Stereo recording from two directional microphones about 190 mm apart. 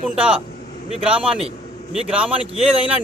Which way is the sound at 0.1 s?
5° right (ahead or behind).